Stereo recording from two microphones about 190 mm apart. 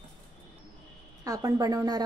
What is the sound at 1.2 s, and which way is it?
Speech, 20° right (ahead or behind).